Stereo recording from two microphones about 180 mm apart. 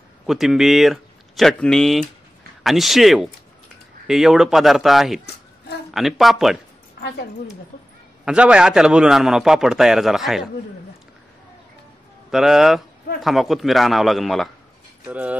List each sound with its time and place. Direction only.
0.3 s a man's voice: centre (ahead or behind)
7.0 s a woman's voice: 65° left (ahead or behind)
8.3 s a man's voice: 5° right (ahead or behind)
12.3 s a man's voice: centre (ahead or behind)